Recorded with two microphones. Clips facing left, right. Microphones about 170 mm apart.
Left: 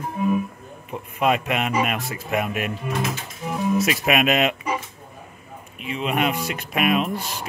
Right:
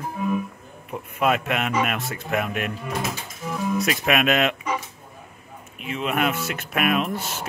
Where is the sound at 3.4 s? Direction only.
20° left (ahead or behind).